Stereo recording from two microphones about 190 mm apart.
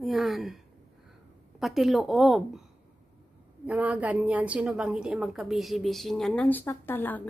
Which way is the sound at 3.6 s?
10° right (ahead or behind).